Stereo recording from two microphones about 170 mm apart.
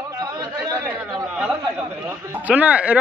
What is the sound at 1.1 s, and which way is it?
A man's voice, centre (ahead or behind).